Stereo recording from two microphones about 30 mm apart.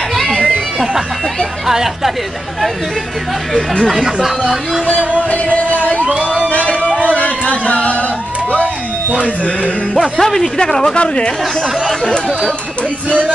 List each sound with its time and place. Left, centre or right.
3.5 s speech: centre
3.9 s speech: centre
6.0 s a sound: right
7.2 s speech: left
9.9 s a man's voice: centre
10.7 s speech: left
11.0 s speech: left